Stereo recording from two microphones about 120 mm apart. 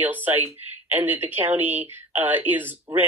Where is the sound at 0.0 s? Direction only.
15° right (ahead or behind).